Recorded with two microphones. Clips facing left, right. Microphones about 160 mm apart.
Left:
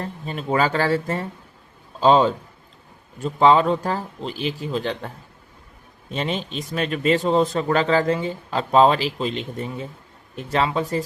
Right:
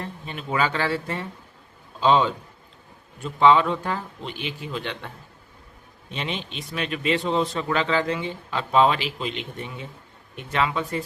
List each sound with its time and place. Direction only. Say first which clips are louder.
0.0 s a man's voice: left 5 dB; 40° left (ahead or behind)